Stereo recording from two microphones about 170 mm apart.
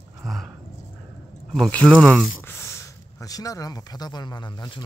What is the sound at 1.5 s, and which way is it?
Speech, 5° left (ahead or behind).